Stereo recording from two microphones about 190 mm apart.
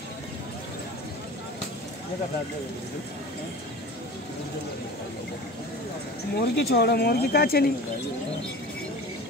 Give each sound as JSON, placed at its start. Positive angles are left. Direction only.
{"t": 6.3, "sound": "speech", "side_deg": 55}